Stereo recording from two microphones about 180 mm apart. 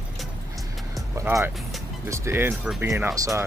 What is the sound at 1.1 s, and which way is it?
Speech, 15° right (ahead or behind).